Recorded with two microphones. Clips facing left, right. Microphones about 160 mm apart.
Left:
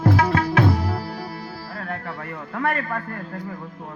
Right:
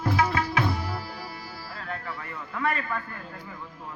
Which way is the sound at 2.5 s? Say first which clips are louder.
Left 4 dB; 60° left (ahead or behind).